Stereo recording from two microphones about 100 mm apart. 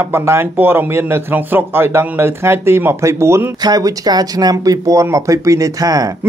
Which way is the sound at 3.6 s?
40° right (ahead or behind).